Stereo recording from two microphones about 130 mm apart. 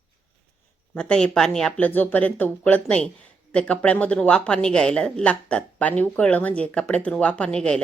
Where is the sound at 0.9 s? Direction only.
5° left (ahead or behind).